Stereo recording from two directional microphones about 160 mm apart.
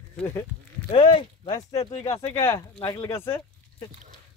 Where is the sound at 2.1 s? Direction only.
20° left (ahead or behind).